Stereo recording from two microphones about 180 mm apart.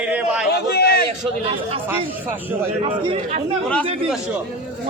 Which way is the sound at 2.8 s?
30° right (ahead or behind).